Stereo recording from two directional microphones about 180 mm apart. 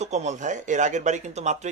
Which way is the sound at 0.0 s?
40° right (ahead or behind).